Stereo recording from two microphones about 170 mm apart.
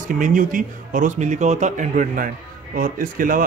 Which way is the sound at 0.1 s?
50° right (ahead or behind).